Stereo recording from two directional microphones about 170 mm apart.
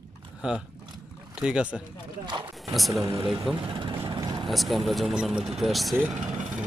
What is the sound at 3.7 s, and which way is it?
Vehicle, 30° right (ahead or behind).